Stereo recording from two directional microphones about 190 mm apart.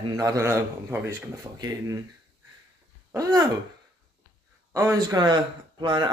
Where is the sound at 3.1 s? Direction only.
20° right (ahead or behind).